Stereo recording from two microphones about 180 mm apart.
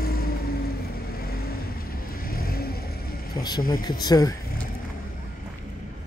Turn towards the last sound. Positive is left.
turn(degrees=20)  # may be behind; listen again after turning